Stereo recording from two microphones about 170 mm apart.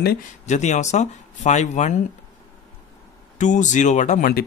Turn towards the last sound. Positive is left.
turn(degrees=55)  # may be behind; listen again after turning